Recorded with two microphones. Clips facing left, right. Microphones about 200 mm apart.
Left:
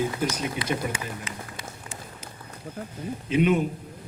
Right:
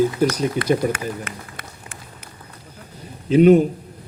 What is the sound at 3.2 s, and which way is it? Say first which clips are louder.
Speech: right 10 dB; 35° right (ahead or behind).